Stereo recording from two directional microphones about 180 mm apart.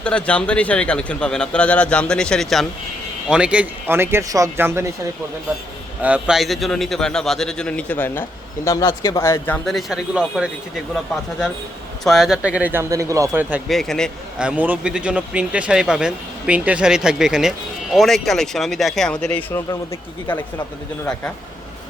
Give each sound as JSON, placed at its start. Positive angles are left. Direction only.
{"t": 0.0, "sound": "a man's voice", "side_deg": 5}
{"t": 6.0, "sound": "a man's voice", "side_deg": -5}
{"t": 9.6, "sound": "a man's voice", "side_deg": 0}
{"t": 12.0, "sound": "speech", "side_deg": 0}
{"t": 13.7, "sound": "a man's voice", "side_deg": 0}